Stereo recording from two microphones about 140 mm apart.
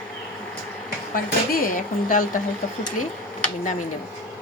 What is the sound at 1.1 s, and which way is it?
Speech, 90° left.